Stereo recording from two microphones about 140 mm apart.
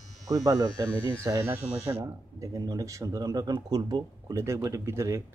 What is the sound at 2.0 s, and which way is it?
Speech, 25° right (ahead or behind).